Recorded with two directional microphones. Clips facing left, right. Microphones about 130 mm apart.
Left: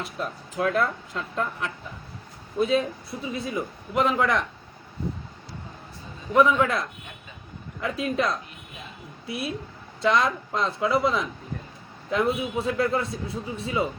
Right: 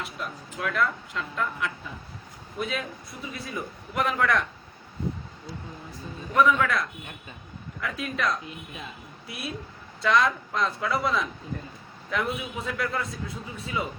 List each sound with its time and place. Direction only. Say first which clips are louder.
0.0 s a man's voice: left 3 dB; 35° left (ahead or behind); by 4.4 s 20° left (ahead or behind)
6.3 s a man's voice: left 2 dB; 25° left (ahead or behind)